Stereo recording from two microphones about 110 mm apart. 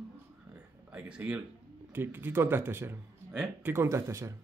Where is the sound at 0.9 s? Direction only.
10° right (ahead or behind); by 4.4 s 25° right (ahead or behind).